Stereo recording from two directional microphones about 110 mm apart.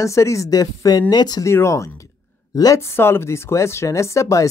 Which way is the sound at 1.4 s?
25° left (ahead or behind).